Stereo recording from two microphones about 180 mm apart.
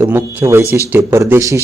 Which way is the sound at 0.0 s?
15° right (ahead or behind).